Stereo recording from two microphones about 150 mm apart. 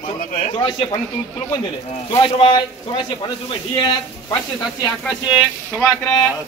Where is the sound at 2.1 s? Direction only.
35° left (ahead or behind).